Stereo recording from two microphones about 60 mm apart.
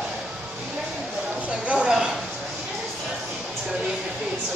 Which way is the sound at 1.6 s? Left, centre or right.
Centre.